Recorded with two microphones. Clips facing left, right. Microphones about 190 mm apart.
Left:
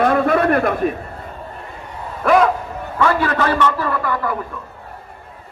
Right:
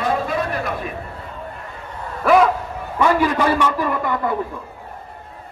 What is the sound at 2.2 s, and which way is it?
Speech, 5° right (ahead or behind).